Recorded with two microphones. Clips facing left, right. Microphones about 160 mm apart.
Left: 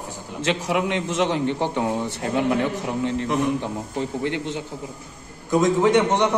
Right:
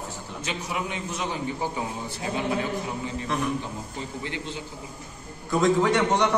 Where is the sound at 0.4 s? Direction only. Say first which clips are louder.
Left 9 dB; 90° left; by 4.6 s 65° left (ahead or behind).